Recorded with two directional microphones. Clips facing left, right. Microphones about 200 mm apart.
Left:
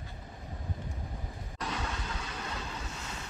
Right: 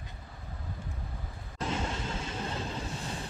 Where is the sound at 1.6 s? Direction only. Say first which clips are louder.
Right 4 dB; 25° right (ahead or behind).